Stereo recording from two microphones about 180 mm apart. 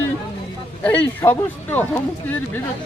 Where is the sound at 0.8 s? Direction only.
10° left (ahead or behind).